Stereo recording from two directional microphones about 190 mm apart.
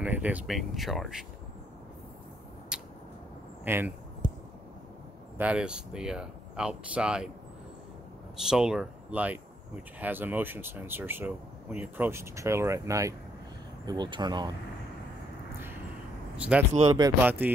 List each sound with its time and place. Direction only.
0.0 s speech: 5° right (ahead or behind)
2.7 s a sound: 5° right (ahead or behind)
3.6 s speech: 10° right (ahead or behind)
5.4 s speech: 5° right (ahead or behind)
8.4 s speech: 5° right (ahead or behind); by 14.5 s 20° right (ahead or behind)
16.3 s speech: 5° right (ahead or behind)